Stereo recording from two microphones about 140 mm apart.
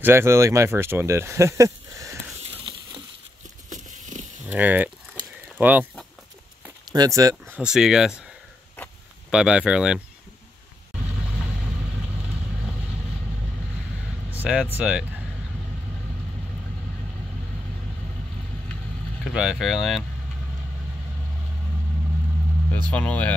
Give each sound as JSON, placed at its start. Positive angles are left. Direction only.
{"t": 0.0, "sound": "speech", "side_deg": -20}
{"t": 3.7, "sound": "a sound", "side_deg": -60}
{"t": 4.5, "sound": "speech", "side_deg": -10}
{"t": 6.9, "sound": "speech", "side_deg": -25}
{"t": 7.5, "sound": "speech", "side_deg": -5}
{"t": 9.3, "sound": "speech", "side_deg": -5}
{"t": 14.3, "sound": "vehicle", "side_deg": -10}
{"t": 14.8, "sound": "speech", "side_deg": -5}
{"t": 19.2, "sound": "speech", "side_deg": -5}
{"t": 22.7, "sound": "speech", "side_deg": 10}